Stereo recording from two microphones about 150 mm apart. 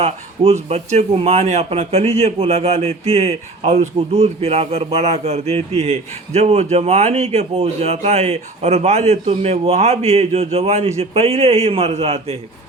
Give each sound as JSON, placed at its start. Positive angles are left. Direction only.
{"t": 0.0, "sound": "speech", "side_deg": -45}